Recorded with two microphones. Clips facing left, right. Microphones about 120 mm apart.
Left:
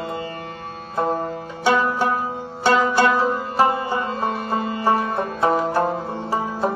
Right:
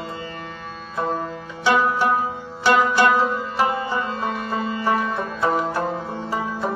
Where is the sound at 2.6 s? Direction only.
40° left (ahead or behind).